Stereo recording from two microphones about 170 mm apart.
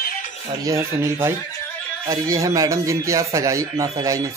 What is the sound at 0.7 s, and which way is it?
A man's voice, 15° right (ahead or behind).